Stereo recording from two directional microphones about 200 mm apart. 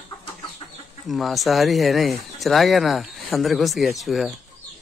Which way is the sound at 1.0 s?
Centre (ahead or behind).